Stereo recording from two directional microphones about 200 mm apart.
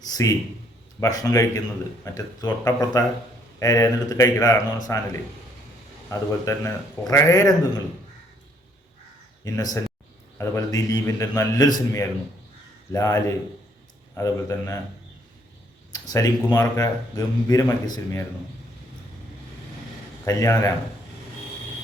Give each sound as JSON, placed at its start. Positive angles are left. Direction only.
{"t": 0.1, "sound": "a sound", "side_deg": 15}
{"t": 0.9, "sound": "speech", "side_deg": 15}
{"t": 6.1, "sound": "speech", "side_deg": 15}
{"t": 9.4, "sound": "speech", "side_deg": 15}
{"t": 15.9, "sound": "speech", "side_deg": 20}
{"t": 20.2, "sound": "speech", "side_deg": 15}